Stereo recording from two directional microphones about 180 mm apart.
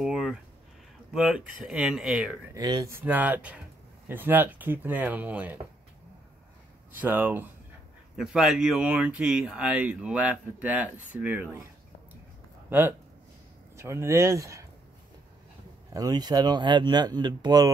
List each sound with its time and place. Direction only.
0.0 s a sound: centre (ahead or behind)
1.1 s speech: 5° right (ahead or behind)
2.5 s speech: 20° right (ahead or behind)
7.0 s speech: 10° right (ahead or behind)
12.6 s speech: 10° right (ahead or behind)
15.9 s speech: 20° right (ahead or behind)